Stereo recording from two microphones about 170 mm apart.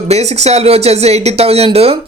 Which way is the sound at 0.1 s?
40° right (ahead or behind).